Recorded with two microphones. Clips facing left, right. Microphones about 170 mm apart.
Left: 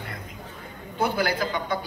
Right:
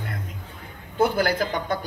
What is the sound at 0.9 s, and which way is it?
Speech, 50° right (ahead or behind).